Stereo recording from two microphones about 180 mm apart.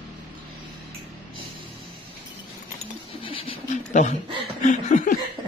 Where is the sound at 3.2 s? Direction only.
30° left (ahead or behind).